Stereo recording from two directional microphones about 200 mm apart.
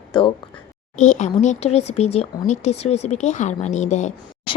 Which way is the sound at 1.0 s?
35° left (ahead or behind).